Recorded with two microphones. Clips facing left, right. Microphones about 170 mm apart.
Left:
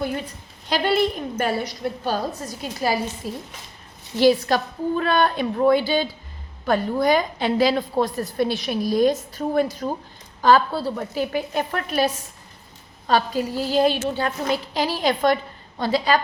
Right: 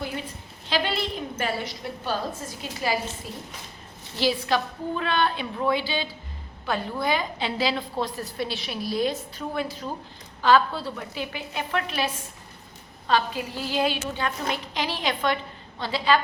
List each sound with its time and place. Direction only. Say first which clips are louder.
0.7 s a woman's voice: left 6 dB; 45° left (ahead or behind)